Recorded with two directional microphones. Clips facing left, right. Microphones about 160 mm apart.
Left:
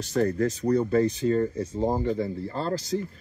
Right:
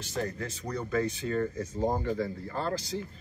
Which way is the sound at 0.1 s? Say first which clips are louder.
Left 10 dB; 40° left (ahead or behind).